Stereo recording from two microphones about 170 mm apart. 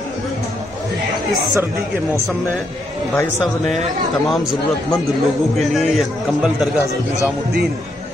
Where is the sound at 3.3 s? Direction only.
Centre (ahead or behind).